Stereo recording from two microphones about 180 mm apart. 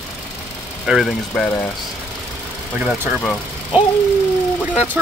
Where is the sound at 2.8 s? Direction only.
5° right (ahead or behind).